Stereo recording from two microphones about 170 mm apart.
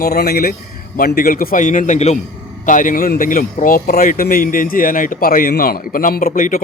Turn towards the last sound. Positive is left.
turn(degrees=55)  # may be behind; listen again after turning